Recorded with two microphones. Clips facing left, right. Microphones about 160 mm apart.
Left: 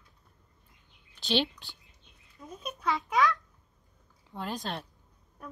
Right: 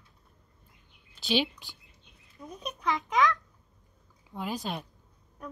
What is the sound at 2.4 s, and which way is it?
Babbling, 5° right (ahead or behind).